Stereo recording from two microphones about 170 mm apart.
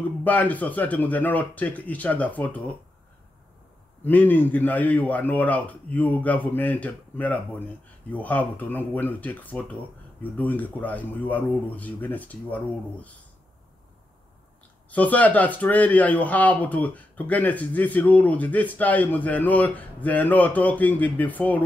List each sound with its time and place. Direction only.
0.2 s speech: 10° left (ahead or behind)
4.0 s speech: 10° left (ahead or behind)
14.9 s speech: 10° left (ahead or behind)